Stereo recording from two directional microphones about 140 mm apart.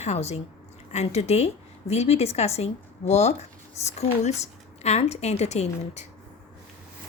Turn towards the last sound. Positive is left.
turn(degrees=55)  # may be behind; listen again after turning